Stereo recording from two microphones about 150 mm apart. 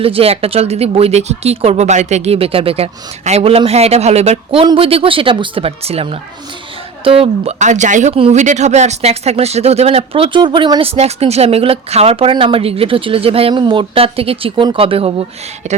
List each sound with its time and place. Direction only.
0.0 s speech: 40° right (ahead or behind)
4.6 s speech: 35° right (ahead or behind); by 8.1 s 55° right (ahead or behind)
8.1 s speech: 45° right (ahead or behind)